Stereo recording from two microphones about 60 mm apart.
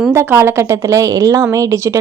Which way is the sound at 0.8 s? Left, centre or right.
Right.